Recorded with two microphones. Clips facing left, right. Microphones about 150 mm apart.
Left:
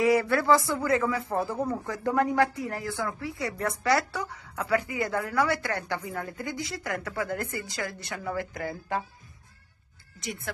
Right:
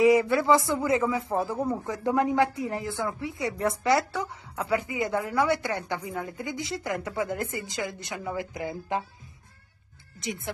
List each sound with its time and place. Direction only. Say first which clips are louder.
0.0 s speech: right 3 dB; 15° right (ahead or behind)
10.2 s speech: right 2 dB; 20° right (ahead or behind)